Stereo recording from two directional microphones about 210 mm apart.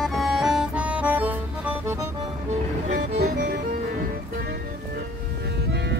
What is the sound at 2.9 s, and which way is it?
Music, 40° right (ahead or behind).